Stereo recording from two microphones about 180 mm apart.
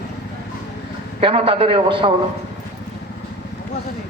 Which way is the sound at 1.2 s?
30° right (ahead or behind).